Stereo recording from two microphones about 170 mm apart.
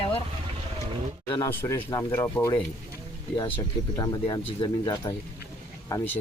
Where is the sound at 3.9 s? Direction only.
25° left (ahead or behind).